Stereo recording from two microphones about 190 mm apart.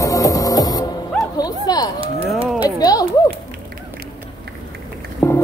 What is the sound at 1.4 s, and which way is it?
Dog, 20° left (ahead or behind).